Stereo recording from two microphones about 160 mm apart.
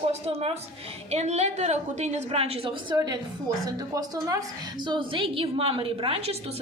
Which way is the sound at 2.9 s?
25° right (ahead or behind).